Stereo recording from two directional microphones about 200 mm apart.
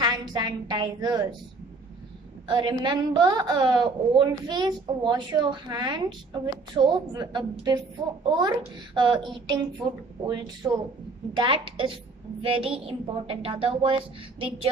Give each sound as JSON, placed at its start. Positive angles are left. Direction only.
{"t": 0.0, "sound": "a woman's voice", "side_deg": -20}
{"t": 2.4, "sound": "a woman's voice", "side_deg": -20}